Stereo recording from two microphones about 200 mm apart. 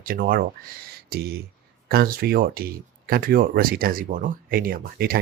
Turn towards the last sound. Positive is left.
turn(degrees=-50)  # may be behind; listen again after turning